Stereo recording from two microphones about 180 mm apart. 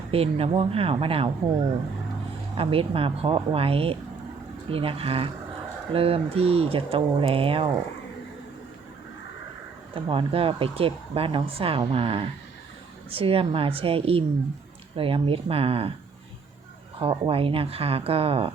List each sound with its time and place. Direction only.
0.1 s speech: 35° right (ahead or behind)
2.6 s speech: 30° right (ahead or behind)
9.9 s speech: 30° right (ahead or behind)
17.0 s speech: 30° right (ahead or behind)